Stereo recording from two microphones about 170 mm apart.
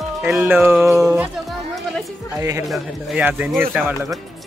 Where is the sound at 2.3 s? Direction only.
20° right (ahead or behind).